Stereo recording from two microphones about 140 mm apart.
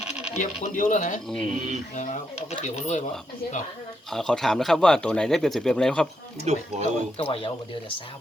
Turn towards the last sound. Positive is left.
turn(degrees=40)  # may be behind; listen again after turning